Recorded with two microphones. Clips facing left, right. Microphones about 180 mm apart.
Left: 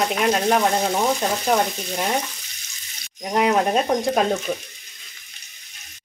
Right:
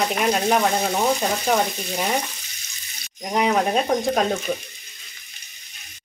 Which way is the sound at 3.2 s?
Centre (ahead or behind).